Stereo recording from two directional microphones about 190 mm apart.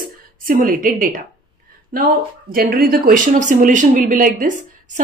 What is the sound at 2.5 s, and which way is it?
Speech, 50° right (ahead or behind).